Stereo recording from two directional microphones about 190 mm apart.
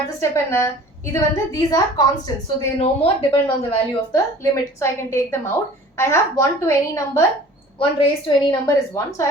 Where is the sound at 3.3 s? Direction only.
25° left (ahead or behind).